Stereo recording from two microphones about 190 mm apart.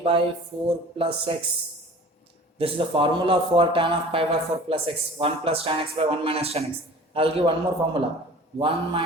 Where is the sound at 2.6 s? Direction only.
30° right (ahead or behind).